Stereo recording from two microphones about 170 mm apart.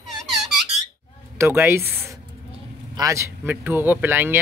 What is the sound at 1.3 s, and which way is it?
Speech, 15° right (ahead or behind).